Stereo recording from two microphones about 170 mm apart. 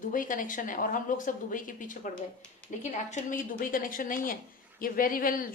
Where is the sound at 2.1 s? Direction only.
5° left (ahead or behind).